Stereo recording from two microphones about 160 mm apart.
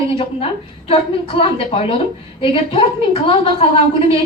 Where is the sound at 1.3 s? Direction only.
35° left (ahead or behind).